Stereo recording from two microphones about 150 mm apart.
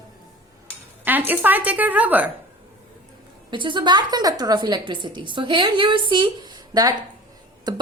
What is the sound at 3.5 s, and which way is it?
A woman's voice, 30° right (ahead or behind).